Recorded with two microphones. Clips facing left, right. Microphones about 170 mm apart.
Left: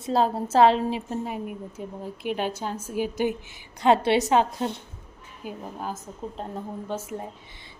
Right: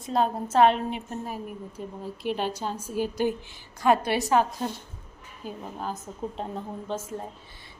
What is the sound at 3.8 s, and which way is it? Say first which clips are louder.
Speech: left 3 dB; 25° left (ahead or behind).